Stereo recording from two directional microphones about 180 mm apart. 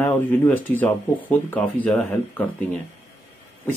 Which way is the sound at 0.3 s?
10° left (ahead or behind).